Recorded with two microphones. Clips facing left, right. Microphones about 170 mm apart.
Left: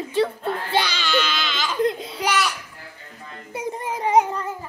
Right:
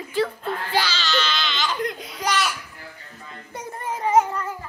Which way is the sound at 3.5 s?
10° left (ahead or behind).